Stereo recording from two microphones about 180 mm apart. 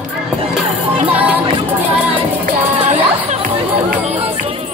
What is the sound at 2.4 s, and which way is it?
Music, 40° right (ahead or behind).